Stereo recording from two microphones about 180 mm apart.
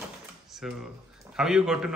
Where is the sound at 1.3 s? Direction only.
5° right (ahead or behind).